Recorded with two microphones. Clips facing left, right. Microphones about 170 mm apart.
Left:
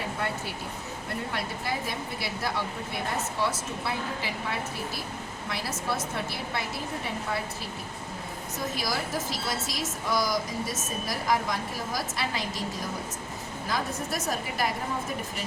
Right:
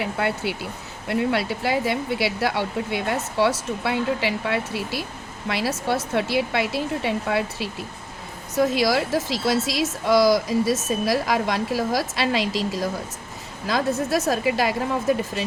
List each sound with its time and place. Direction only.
0.0 s a woman's voice: 75° right (ahead or behind); by 14.8 s 90° right